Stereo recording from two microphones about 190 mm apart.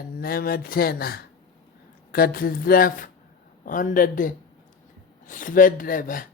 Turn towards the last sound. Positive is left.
turn(degrees=45)  # may be behind; listen again after turning